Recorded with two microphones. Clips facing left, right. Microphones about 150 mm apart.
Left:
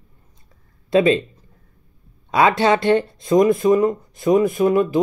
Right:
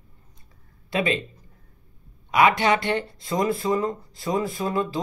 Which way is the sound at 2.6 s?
25° left (ahead or behind).